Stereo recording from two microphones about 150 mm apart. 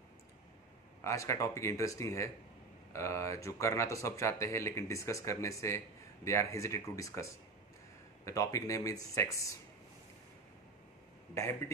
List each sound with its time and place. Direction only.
1.0 s speech: 20° left (ahead or behind)
8.3 s speech: 20° left (ahead or behind)